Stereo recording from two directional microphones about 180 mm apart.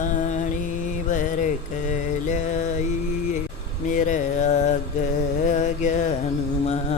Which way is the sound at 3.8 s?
45° left (ahead or behind).